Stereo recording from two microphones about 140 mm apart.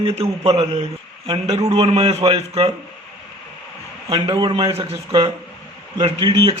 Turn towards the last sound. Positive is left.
turn(degrees=-35)  # may be behind; listen again after turning